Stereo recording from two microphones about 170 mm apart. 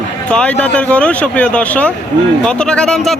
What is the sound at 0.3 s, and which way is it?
Speech, 5° left (ahead or behind).